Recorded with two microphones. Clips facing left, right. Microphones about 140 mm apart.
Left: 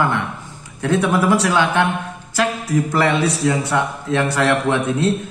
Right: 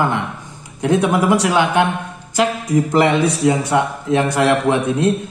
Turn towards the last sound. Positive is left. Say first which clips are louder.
# right 2 dB
turn(degrees=-15)  # may be behind; listen again after turning